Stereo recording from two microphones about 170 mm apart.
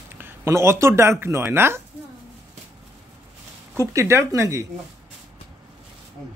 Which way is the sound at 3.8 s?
15° right (ahead or behind).